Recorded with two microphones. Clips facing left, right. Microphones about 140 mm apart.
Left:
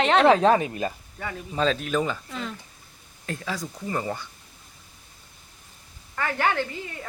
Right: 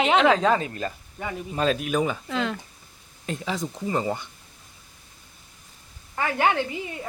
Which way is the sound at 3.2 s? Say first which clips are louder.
Right 3 dB; 20° right (ahead or behind).